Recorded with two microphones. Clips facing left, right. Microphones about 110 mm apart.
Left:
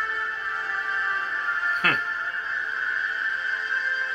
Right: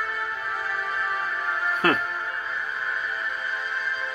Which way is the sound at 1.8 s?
30° right (ahead or behind).